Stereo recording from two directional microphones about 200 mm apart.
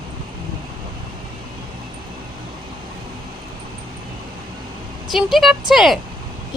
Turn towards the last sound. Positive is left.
turn(degrees=0)  # may be behind; listen again after turning